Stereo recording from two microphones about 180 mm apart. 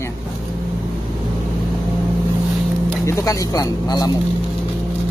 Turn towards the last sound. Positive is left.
turn(degrees=20)  # may be behind; listen again after turning